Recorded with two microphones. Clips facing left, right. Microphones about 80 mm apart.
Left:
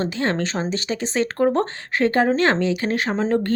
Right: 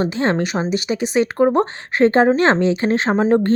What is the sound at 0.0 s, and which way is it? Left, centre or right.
Speech, right.